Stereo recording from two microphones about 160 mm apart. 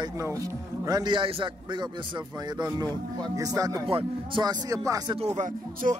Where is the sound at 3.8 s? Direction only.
35° right (ahead or behind).